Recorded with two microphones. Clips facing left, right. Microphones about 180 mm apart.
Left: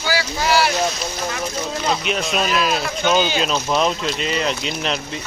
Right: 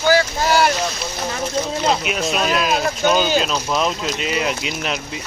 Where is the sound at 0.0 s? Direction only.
50° right (ahead or behind).